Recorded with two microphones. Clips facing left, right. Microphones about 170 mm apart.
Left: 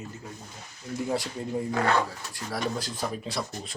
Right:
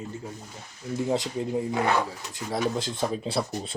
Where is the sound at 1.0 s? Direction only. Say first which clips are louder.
Right 3 dB; 20° right (ahead or behind).